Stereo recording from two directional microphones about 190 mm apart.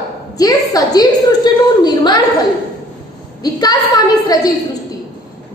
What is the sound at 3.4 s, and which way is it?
Speech, 20° left (ahead or behind).